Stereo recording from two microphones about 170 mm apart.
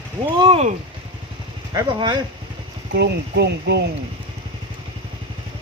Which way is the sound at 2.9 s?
80° right.